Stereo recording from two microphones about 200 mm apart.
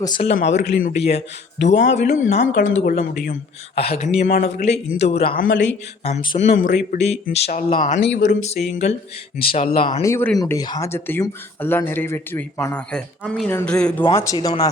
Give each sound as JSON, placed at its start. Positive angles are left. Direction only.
{"t": 0.0, "sound": "speech", "side_deg": 25}
{"t": 0.3, "sound": "a man's voice", "side_deg": 35}
{"t": 1.6, "sound": "speech", "side_deg": 35}
{"t": 6.5, "sound": "speech", "side_deg": 40}
{"t": 8.0, "sound": "speech", "side_deg": 65}
{"t": 8.3, "sound": "speech", "side_deg": 35}
{"t": 10.0, "sound": "speech", "side_deg": 10}
{"t": 14.0, "sound": "speech", "side_deg": 20}